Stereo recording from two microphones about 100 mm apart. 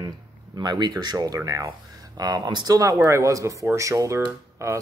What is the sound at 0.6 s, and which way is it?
Speech, 45° right (ahead or behind).